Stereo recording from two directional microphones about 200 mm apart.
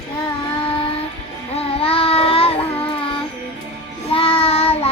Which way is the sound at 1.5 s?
30° left (ahead or behind).